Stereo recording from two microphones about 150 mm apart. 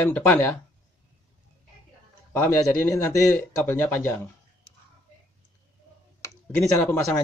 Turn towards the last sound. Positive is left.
turn(degrees=15)  # may be behind; listen again after turning